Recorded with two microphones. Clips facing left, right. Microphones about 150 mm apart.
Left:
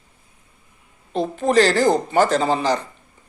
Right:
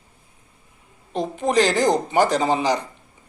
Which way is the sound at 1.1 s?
15° right (ahead or behind).